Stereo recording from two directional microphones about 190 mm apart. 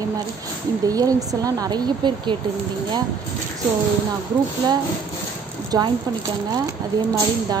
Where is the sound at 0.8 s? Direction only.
20° right (ahead or behind).